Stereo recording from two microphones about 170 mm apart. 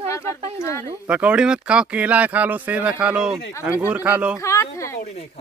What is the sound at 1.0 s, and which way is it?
Speech, 10° right (ahead or behind).